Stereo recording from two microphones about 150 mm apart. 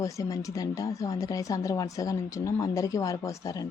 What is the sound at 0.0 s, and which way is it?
Speech, 20° left (ahead or behind).